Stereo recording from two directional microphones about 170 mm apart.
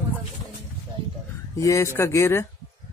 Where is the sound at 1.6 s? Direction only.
20° left (ahead or behind).